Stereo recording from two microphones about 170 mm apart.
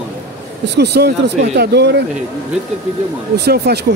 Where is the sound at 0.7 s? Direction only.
75° right (ahead or behind).